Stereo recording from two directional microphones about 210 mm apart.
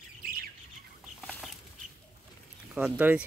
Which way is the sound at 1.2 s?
Centre (ahead or behind).